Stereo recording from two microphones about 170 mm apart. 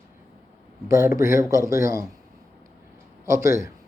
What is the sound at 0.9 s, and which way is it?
Speech, 15° right (ahead or behind).